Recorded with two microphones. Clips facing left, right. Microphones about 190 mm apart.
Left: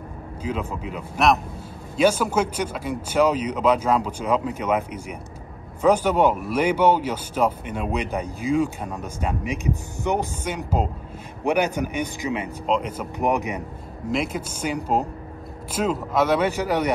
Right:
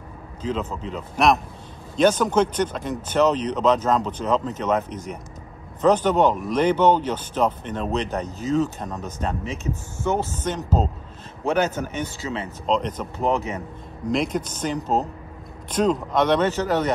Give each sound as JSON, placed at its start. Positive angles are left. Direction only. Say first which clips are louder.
{"t": 0.4, "sound": "speech", "louder": "right 1 dB", "side_deg": 10}